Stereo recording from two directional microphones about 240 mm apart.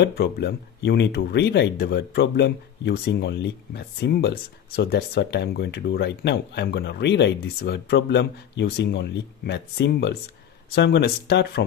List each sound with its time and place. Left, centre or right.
0.0 s speech: left